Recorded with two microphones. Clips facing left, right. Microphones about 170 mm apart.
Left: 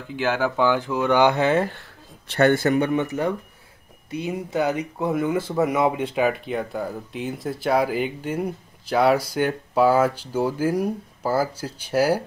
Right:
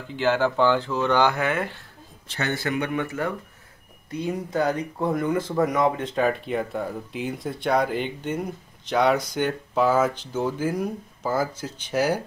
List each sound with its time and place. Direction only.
0.1 s speech: 10° left (ahead or behind); by 1.7 s 30° left (ahead or behind)
2.2 s speech: 55° left (ahead or behind)
2.8 s speech: 25° left (ahead or behind)
4.6 s speech: 20° left (ahead or behind)
4.9 s speech: 5° left (ahead or behind)